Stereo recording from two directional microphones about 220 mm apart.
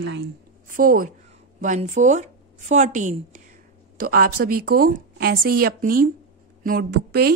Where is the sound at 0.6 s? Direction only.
40° right (ahead or behind).